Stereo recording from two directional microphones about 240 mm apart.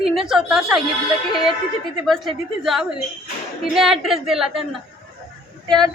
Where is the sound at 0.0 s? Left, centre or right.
Centre.